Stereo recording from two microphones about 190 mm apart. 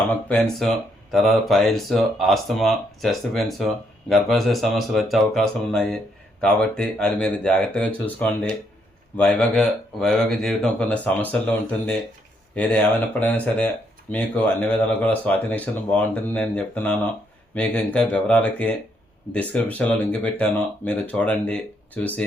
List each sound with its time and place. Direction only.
0.3 s speech: 5° left (ahead or behind)